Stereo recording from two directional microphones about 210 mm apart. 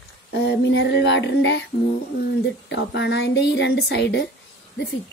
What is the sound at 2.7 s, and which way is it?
Speech, 55° left (ahead or behind).